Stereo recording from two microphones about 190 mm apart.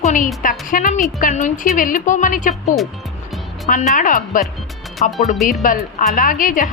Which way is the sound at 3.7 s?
45° left (ahead or behind).